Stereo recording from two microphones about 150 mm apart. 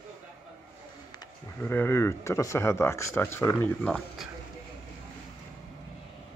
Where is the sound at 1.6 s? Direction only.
15° left (ahead or behind).